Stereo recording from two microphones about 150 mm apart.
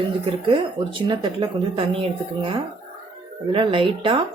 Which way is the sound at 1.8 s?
40° right (ahead or behind).